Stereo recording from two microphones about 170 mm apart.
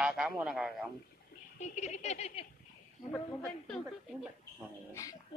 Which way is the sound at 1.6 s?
40° left (ahead or behind).